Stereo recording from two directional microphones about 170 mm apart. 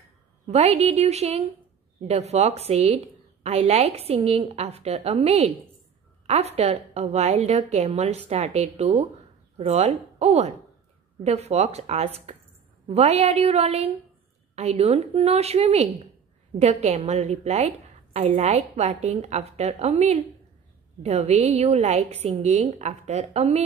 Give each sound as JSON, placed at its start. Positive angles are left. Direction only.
{"t": 0.5, "sound": "a woman's voice", "side_deg": -40}